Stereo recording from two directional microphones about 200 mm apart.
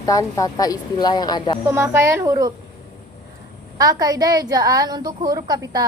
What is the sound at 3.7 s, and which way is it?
A woman's voice, 20° right (ahead or behind).